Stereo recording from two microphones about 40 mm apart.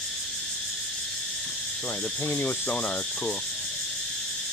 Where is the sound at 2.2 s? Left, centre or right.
Left.